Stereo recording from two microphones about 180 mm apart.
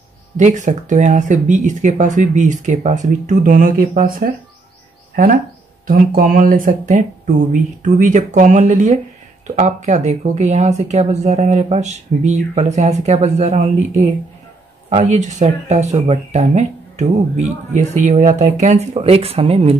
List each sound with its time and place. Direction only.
0.4 s speech: 45° right (ahead or behind)